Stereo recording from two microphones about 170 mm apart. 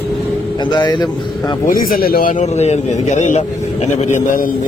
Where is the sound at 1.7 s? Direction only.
55° left (ahead or behind).